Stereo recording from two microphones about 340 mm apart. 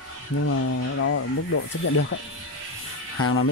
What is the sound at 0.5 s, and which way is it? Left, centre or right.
Speech, left.